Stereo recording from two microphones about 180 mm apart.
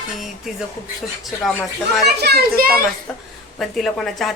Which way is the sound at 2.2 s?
60° right (ahead or behind).